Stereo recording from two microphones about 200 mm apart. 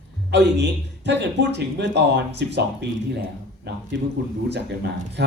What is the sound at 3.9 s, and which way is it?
A man's voice, 55° right (ahead or behind).